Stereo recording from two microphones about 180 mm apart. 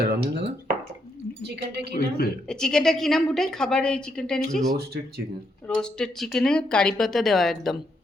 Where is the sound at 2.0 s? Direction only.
60° left (ahead or behind).